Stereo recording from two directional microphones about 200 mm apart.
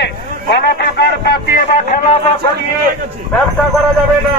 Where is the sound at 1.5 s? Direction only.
35° left (ahead or behind).